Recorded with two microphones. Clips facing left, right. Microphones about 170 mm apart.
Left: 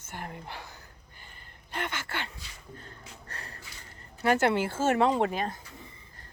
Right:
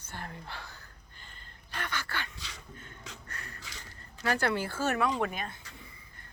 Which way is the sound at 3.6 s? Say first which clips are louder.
Right 1 dB; 90° right.